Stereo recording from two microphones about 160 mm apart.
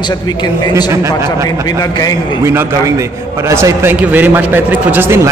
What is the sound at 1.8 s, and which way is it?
Speech, 25° left (ahead or behind).